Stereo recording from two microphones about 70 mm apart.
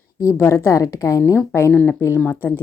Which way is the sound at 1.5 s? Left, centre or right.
Left.